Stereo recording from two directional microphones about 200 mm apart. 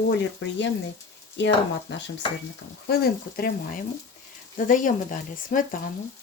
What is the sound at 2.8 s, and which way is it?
Speech, 50° left (ahead or behind).